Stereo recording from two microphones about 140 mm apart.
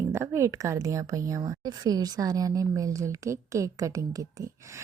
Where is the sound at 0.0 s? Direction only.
20° right (ahead or behind).